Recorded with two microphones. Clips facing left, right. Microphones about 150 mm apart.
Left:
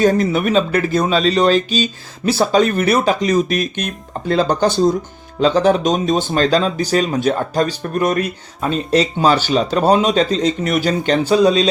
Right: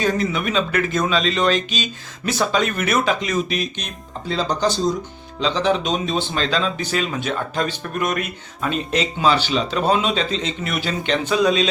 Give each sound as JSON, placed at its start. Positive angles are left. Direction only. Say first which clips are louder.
{"t": 0.0, "sound": "speech", "louder": "left 6 dB", "side_deg": 40}